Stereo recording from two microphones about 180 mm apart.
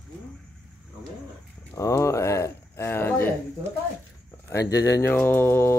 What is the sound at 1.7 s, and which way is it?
Speech, 15° left (ahead or behind).